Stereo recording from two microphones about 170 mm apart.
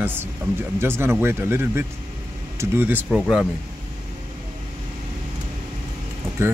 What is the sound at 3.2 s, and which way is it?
Speech, centre (ahead or behind).